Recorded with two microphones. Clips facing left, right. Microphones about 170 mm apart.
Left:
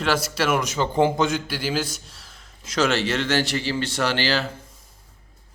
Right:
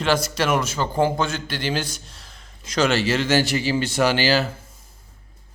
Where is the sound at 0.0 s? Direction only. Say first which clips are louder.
Right 1 dB; 5° left (ahead or behind).